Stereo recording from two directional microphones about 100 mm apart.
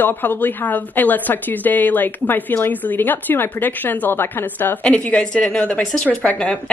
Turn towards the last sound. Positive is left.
turn(degrees=15)  # may be behind; listen again after turning